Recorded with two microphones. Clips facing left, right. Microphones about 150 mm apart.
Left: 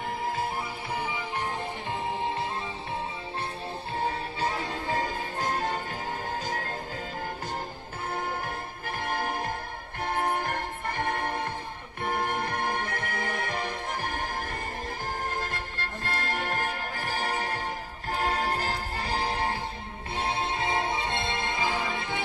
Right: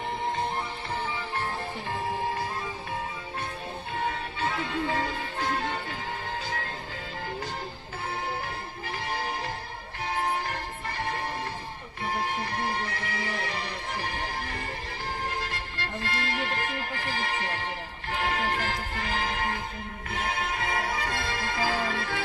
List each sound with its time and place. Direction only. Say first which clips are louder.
1.0 s music: even; 15° left (ahead or behind)
4.0 s music: left 1 dB; 40° left (ahead or behind)
8.8 s music: left 2 dB; 50° left (ahead or behind); by 22.2 s 20° left (ahead or behind)